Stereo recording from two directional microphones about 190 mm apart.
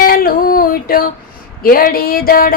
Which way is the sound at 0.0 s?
50° left (ahead or behind).